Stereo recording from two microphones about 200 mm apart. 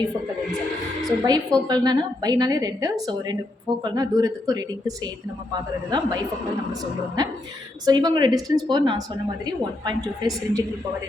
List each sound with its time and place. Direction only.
1.0 s a woman's voice: 20° right (ahead or behind)
7.2 s a woman's voice: 20° right (ahead or behind)